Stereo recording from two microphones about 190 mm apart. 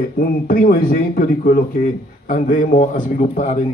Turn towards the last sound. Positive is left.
turn(degrees=40)  # may be behind; listen again after turning